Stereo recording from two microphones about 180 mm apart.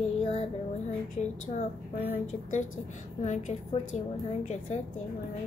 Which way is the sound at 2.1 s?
40° left (ahead or behind).